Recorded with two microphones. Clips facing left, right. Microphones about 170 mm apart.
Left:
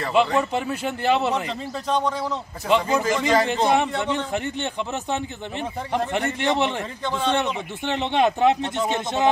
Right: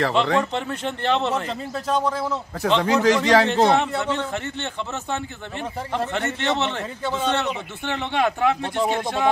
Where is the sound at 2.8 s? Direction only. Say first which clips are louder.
Right 4 dB; 80° right.